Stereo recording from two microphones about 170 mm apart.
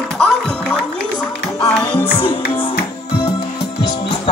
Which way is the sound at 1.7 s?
10° left (ahead or behind).